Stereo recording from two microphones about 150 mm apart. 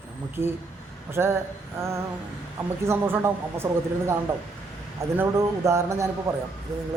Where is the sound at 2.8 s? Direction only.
15° right (ahead or behind).